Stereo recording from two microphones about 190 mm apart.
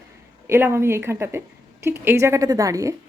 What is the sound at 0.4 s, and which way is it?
A woman's voice, 15° right (ahead or behind).